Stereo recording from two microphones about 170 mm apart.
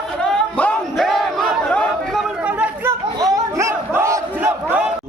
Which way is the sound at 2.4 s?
5° right (ahead or behind).